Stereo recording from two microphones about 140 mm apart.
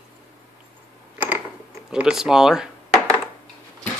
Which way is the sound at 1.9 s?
5° right (ahead or behind).